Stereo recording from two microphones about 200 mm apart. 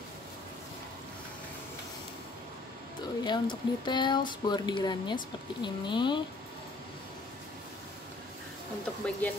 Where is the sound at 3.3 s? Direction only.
20° left (ahead or behind).